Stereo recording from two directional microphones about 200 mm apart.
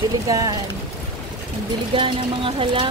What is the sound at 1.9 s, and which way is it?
Speech, 25° right (ahead or behind).